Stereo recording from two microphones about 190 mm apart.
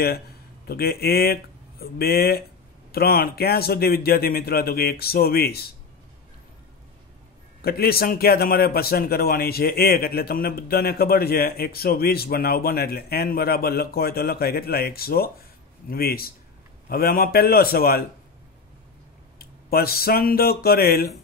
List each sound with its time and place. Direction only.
0.7 s a man's voice: 55° left (ahead or behind)
7.6 s a man's voice: 55° left (ahead or behind)
19.3 s speech: 55° left (ahead or behind)